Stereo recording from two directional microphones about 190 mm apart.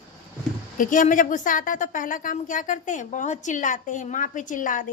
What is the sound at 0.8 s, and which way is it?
Speech, 45° left (ahead or behind).